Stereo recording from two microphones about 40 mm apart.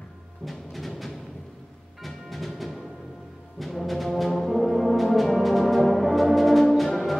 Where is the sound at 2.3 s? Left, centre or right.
Centre.